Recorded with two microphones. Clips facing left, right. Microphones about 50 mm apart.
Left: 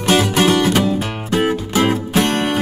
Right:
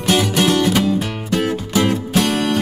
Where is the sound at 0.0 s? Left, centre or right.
Centre.